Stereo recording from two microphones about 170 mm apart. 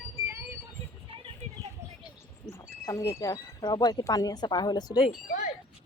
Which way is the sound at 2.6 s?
20° left (ahead or behind).